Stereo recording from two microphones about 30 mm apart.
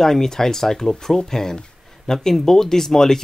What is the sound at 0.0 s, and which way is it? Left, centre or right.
Speech, centre.